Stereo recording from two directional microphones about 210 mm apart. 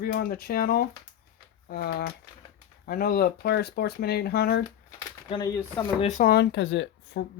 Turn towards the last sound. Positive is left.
turn(degrees=55)  # may be behind; listen again after turning